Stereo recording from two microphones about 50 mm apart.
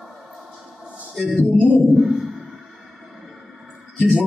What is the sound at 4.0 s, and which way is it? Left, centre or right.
Speech, right.